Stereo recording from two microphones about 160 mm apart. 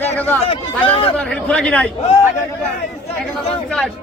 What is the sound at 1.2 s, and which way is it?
Speech, 5° left (ahead or behind).